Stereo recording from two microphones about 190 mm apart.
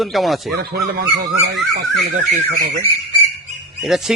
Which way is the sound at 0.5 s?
55° right (ahead or behind).